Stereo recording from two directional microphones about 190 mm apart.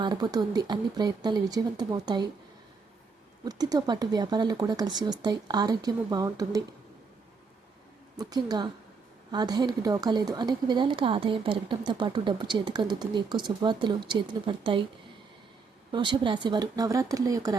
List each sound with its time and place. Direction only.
0.0 s speech: 20° right (ahead or behind)
3.4 s speech: 20° right (ahead or behind)
8.1 s speech: 20° right (ahead or behind)
15.9 s speech: 25° right (ahead or behind)